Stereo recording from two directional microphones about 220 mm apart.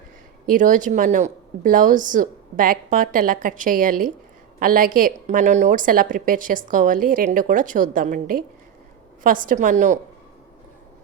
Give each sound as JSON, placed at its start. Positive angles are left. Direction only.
{"t": 0.4, "sound": "a woman's voice", "side_deg": -35}